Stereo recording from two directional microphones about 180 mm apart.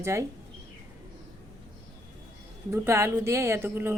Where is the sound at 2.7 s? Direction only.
15° right (ahead or behind).